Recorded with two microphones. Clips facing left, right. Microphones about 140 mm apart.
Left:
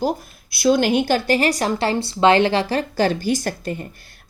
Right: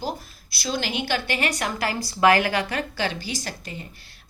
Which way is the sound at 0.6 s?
55° left (ahead or behind).